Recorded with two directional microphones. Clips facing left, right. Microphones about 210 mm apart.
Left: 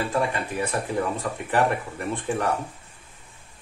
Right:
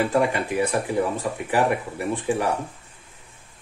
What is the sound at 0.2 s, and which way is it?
Speech, 15° right (ahead or behind).